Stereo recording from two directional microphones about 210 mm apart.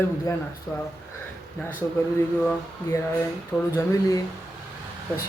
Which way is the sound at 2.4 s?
15° left (ahead or behind).